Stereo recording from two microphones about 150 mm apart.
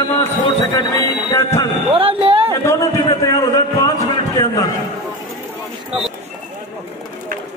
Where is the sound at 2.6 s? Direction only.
20° left (ahead or behind).